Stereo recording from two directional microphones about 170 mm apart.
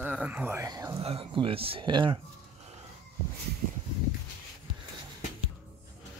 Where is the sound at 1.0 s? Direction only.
35° right (ahead or behind).